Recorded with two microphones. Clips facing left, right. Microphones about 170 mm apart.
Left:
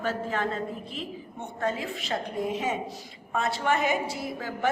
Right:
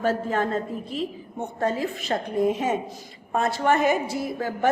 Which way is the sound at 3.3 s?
45° right (ahead or behind).